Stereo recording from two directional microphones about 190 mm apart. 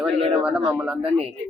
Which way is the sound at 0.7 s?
5° right (ahead or behind).